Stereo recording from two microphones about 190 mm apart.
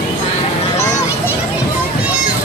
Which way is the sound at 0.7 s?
15° left (ahead or behind).